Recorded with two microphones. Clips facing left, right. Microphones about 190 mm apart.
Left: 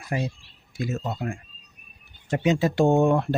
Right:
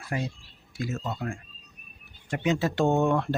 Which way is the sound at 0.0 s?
20° left (ahead or behind).